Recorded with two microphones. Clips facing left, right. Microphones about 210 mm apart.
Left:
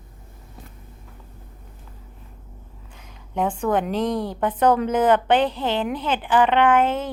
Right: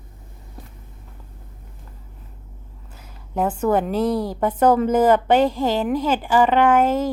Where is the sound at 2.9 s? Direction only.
5° right (ahead or behind).